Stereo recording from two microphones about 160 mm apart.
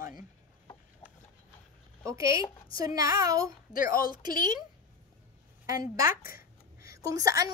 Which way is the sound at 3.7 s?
60° left (ahead or behind).